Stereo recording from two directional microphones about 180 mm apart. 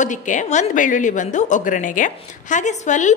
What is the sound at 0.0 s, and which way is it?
A woman's voice, 45° left (ahead or behind).